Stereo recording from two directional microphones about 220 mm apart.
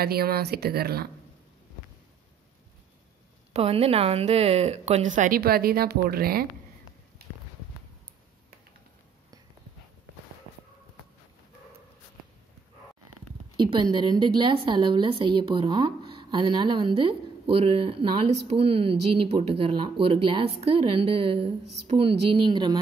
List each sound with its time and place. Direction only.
0.0 s speech: 45° right (ahead or behind)
3.5 s speech: 25° right (ahead or behind); by 6.4 s 45° right (ahead or behind)
7.2 s a sound: 45° right (ahead or behind)
13.6 s a woman's voice: 20° right (ahead or behind)